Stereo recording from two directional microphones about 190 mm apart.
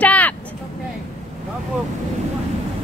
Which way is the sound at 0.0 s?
10° left (ahead or behind).